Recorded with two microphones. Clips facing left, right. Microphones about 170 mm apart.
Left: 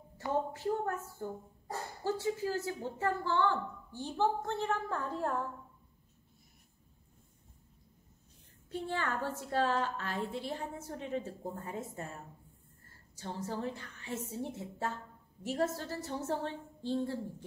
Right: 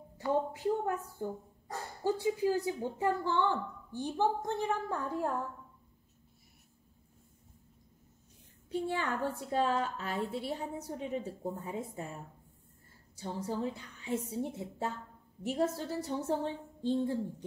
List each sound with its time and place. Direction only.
0.5 s speech: 15° right (ahead or behind)
8.8 s a woman's voice: 15° right (ahead or behind)
13.2 s speech: 10° right (ahead or behind)